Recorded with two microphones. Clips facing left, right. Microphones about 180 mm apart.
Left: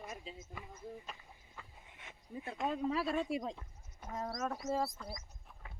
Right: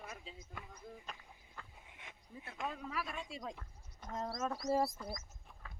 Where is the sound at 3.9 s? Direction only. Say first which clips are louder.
Even; 10° left (ahead or behind).